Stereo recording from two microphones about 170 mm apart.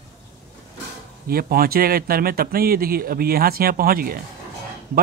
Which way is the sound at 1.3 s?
60° right (ahead or behind).